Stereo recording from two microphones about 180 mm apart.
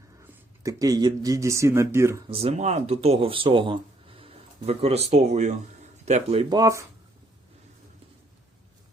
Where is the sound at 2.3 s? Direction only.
35° right (ahead or behind); by 6.8 s 20° right (ahead or behind).